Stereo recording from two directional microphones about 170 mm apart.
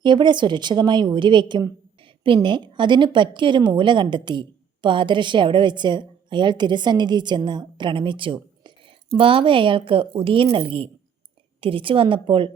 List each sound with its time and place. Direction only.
0.0 s a woman's voice: 25° right (ahead or behind)